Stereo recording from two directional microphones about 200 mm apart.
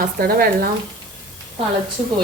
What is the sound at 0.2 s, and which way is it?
Speech, 50° right (ahead or behind).